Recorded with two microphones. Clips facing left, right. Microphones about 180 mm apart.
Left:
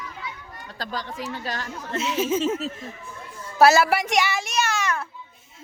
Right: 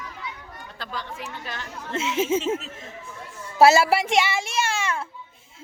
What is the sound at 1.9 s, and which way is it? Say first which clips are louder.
Speech: right 1 dB; 25° right (ahead or behind).